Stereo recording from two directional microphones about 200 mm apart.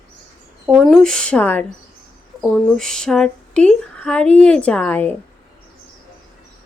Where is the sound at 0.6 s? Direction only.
Centre (ahead or behind).